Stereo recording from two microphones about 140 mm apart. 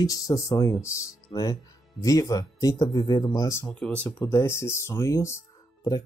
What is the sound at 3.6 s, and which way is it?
Speech, 5° left (ahead or behind).